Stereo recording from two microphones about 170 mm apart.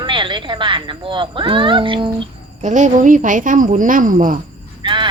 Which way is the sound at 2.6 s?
45° right (ahead or behind).